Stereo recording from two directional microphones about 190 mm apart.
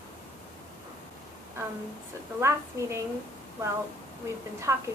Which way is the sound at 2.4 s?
15° right (ahead or behind).